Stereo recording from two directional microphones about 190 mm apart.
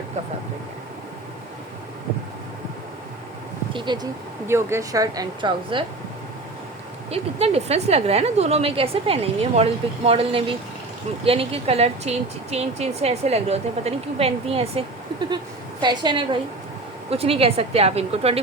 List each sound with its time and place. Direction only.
3.7 s speech: 25° right (ahead or behind)
7.1 s a woman's voice: 30° right (ahead or behind)